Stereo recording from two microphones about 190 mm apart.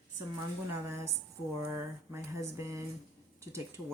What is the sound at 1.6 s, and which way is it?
Speech, 15° right (ahead or behind).